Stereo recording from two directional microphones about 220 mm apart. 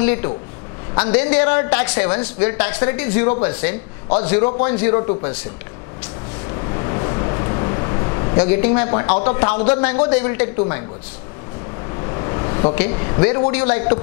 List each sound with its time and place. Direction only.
0.0 s a woman's voice: 15° left (ahead or behind)
6.5 s a sound: 25° left (ahead or behind)
8.7 s speech: 20° left (ahead or behind)
11.9 s vehicle: 25° left (ahead or behind)
12.9 s speech: 20° left (ahead or behind)